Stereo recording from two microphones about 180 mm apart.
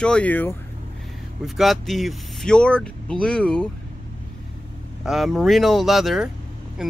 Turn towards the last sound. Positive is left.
turn(degrees=0)  # may be behind; listen again after turning